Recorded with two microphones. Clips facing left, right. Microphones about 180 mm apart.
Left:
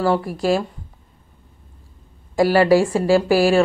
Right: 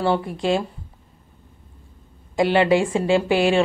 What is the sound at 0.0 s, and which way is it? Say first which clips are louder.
Speech: left 2 dB; 25° right (ahead or behind).